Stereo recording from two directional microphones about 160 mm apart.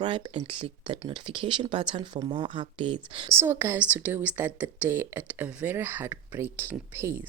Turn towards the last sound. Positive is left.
turn(degrees=-15)  # may be behind; listen again after turning